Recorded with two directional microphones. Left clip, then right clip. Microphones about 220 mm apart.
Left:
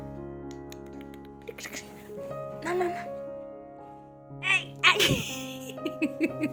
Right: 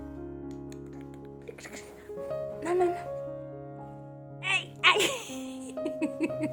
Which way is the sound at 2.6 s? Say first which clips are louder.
Right 1 dB; 10° right (ahead or behind).